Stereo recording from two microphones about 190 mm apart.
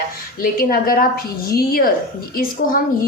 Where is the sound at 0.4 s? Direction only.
50° left (ahead or behind).